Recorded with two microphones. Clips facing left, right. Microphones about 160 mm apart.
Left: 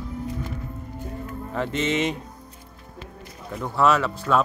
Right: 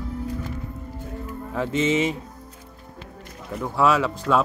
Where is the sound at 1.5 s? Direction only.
5° right (ahead or behind).